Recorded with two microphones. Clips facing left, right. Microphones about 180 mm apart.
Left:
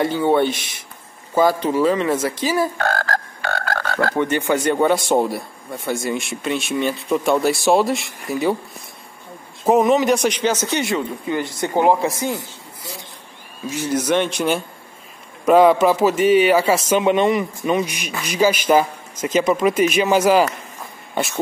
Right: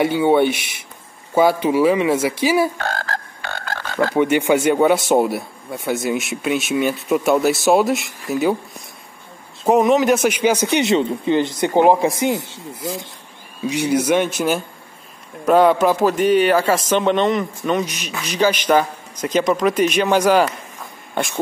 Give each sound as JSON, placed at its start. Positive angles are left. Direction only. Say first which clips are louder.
{"t": 0.0, "sound": "speech", "louder": "right 2 dB", "side_deg": -10}
{"t": 2.8, "sound": "frog", "louder": "left 4 dB", "side_deg": 45}
{"t": 4.0, "sound": "speech", "louder": "right 4 dB", "side_deg": -10}
{"t": 9.7, "sound": "speech", "louder": "right 1 dB", "side_deg": 0}
{"t": 12.4, "sound": "speech", "louder": "right 5 dB", "side_deg": -80}
{"t": 13.8, "sound": "a man's voice", "louder": "right 2 dB", "side_deg": -10}
{"t": 21.1, "sound": "a sound", "louder": "even", "side_deg": 0}